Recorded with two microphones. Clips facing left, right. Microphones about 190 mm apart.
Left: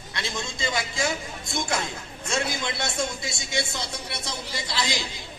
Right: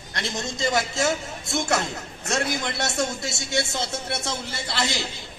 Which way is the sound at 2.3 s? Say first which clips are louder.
Right 2 dB; 55° right (ahead or behind).